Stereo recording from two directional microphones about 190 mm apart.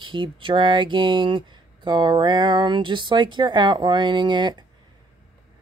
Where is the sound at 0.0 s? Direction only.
25° right (ahead or behind).